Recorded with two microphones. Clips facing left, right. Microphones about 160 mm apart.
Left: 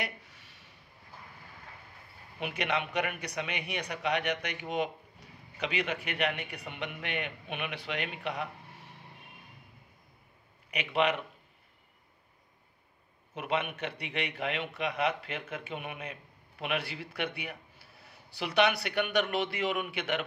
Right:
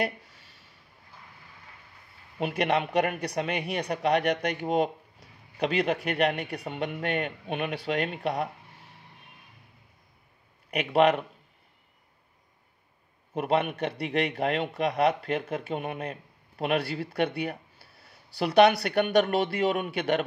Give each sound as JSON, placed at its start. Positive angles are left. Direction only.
{"t": 2.8, "sound": "a man's voice", "side_deg": -35}
{"t": 10.7, "sound": "speech", "side_deg": -45}
{"t": 13.3, "sound": "a man's voice", "side_deg": -40}